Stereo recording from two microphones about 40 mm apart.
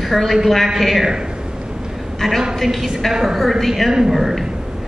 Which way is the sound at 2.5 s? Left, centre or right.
Centre.